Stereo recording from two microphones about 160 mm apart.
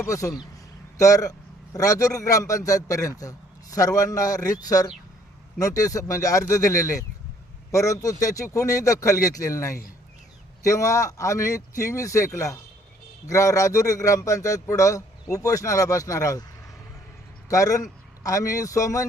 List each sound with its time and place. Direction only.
0.0 s a man's voice: 20° left (ahead or behind)
17.5 s a man's voice: 20° left (ahead or behind)